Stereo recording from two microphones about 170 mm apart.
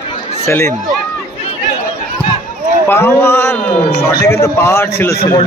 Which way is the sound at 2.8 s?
15° left (ahead or behind).